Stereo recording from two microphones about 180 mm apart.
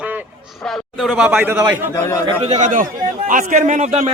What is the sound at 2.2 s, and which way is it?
A man's voice, 35° right (ahead or behind).